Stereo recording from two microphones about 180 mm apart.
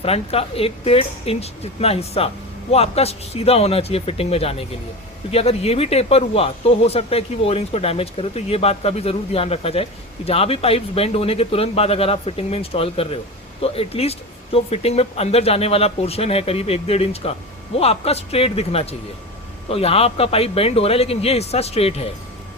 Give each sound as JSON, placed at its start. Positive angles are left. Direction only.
{"t": 0.0, "sound": "speech", "side_deg": 35}